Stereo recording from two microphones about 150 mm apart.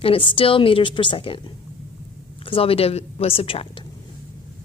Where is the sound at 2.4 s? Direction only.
40° left (ahead or behind).